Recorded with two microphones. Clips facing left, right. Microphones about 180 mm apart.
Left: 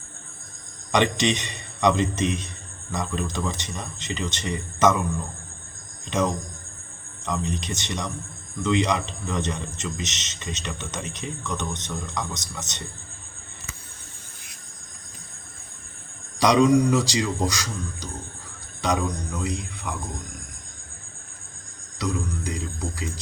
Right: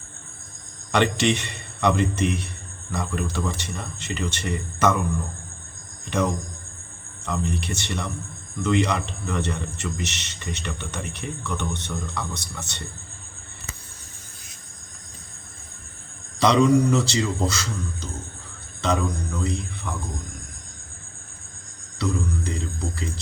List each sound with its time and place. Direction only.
0.9 s a man's voice: 15° left (ahead or behind)
6.1 s a man's voice: 20° left (ahead or behind)
16.4 s a man's voice: 15° left (ahead or behind)
21.9 s music: 10° left (ahead or behind)